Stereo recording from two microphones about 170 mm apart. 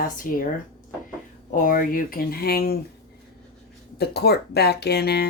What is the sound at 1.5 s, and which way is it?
Speech, 50° left (ahead or behind).